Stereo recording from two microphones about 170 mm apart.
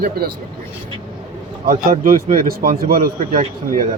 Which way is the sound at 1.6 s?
50° right (ahead or behind).